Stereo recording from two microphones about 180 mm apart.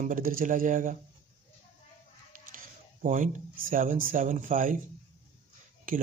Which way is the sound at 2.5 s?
45° right (ahead or behind).